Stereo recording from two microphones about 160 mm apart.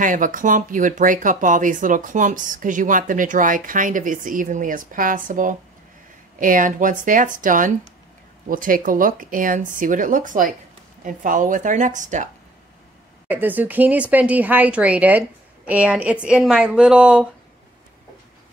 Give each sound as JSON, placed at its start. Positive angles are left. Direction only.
{"t": 0.0, "sound": "a woman's voice", "side_deg": -55}
{"t": 13.3, "sound": "speech", "side_deg": -10}